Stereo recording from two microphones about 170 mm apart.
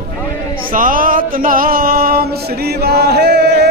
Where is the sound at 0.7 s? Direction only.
55° right (ahead or behind).